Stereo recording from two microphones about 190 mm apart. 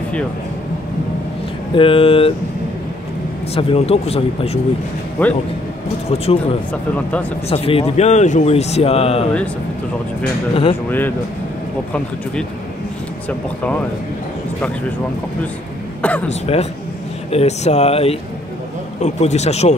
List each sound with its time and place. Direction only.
1.8 s speech: 30° left (ahead or behind)
3.5 s speech: 30° left (ahead or behind)
5.2 s speech: 10° left (ahead or behind)
6.0 s speech: 30° left (ahead or behind)
6.7 s speech: 5° left (ahead or behind)
7.4 s speech: 30° left (ahead or behind)
10.5 s speech: 30° left (ahead or behind)
10.9 s speech: 10° left (ahead or behind)
13.3 s speech: 5° left (ahead or behind)
16.0 s speech: 10° left (ahead or behind)
16.3 s speech: 35° left (ahead or behind)